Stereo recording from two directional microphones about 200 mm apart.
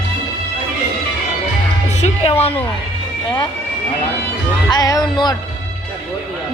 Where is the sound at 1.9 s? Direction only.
35° left (ahead or behind).